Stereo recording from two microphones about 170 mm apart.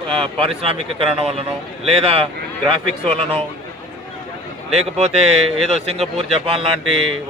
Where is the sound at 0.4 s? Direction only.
35° right (ahead or behind).